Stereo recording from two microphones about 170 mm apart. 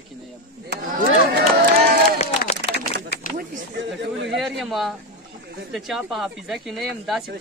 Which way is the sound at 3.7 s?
90° right.